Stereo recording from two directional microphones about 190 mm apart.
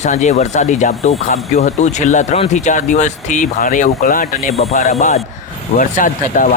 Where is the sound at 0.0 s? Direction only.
40° left (ahead or behind).